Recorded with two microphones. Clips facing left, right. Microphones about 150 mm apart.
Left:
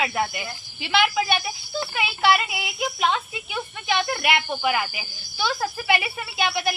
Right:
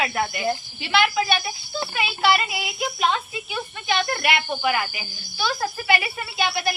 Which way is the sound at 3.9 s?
15° left (ahead or behind).